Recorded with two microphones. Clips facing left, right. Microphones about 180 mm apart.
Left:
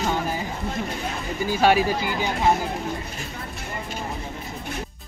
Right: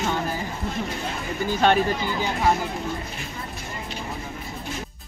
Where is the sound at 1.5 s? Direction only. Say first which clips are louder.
Left 1 dB; 5° left (ahead or behind).